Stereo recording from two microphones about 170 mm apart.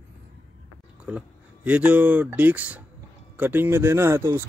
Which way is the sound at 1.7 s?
10° right (ahead or behind).